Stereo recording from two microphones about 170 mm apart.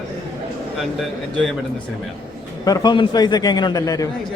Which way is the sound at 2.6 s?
25° left (ahead or behind).